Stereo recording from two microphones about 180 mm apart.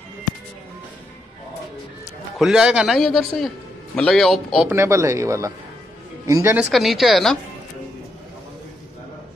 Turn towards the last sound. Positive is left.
turn(degrees=0)  # may be behind; listen again after turning